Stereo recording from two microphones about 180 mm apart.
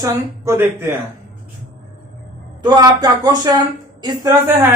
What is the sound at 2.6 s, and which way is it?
Speech, 20° right (ahead or behind).